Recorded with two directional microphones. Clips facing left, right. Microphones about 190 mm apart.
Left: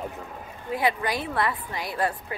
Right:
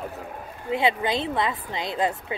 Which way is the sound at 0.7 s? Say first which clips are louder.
Right 2 dB; 25° right (ahead or behind).